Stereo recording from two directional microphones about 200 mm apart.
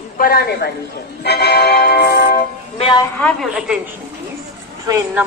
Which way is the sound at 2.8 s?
25° left (ahead or behind).